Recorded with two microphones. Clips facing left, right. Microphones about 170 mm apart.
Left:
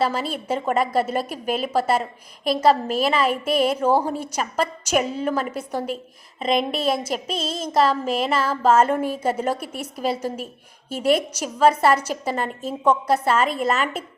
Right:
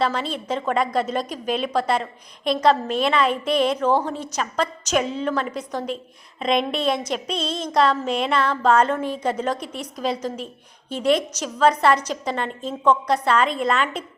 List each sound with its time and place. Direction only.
0.0 s a woman's voice: 5° left (ahead or behind)